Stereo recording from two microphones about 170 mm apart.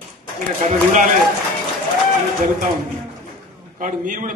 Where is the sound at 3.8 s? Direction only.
50° right (ahead or behind).